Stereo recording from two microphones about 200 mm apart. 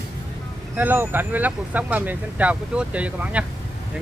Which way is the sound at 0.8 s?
10° right (ahead or behind).